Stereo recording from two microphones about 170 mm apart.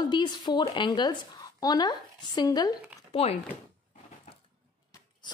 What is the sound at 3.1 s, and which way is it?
Speech, 35° left (ahead or behind).